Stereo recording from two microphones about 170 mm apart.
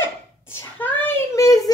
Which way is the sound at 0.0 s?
15° left (ahead or behind).